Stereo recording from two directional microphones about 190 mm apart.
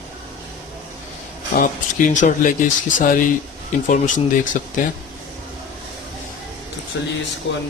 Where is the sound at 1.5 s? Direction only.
45° left (ahead or behind).